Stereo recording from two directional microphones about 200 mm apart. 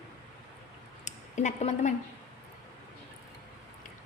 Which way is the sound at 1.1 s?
35° left (ahead or behind).